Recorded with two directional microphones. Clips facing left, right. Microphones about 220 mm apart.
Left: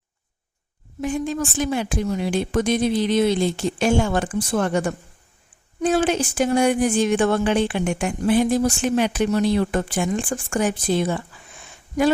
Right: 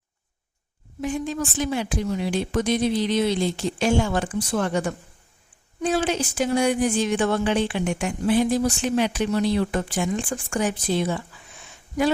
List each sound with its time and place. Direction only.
1.0 s speech: 50° left (ahead or behind)